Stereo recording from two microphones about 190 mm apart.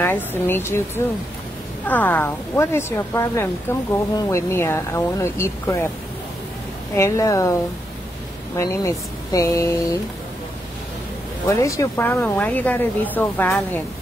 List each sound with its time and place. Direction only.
0.0 s speech: 10° left (ahead or behind)
7.0 s speech: 15° left (ahead or behind)
8.5 s speech: 15° left (ahead or behind)
11.4 s speech: 15° left (ahead or behind)